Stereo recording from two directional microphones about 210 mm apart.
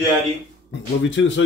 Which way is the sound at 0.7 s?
60° left (ahead or behind).